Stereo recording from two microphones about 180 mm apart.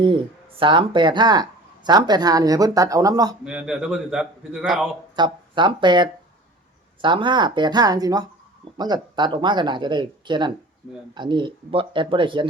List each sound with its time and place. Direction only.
0.0 s speech: 30° right (ahead or behind)
3.4 s a man's voice: 5° right (ahead or behind)
5.1 s speech: 25° right (ahead or behind)